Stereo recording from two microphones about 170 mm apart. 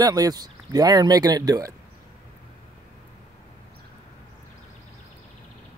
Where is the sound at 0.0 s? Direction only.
20° right (ahead or behind).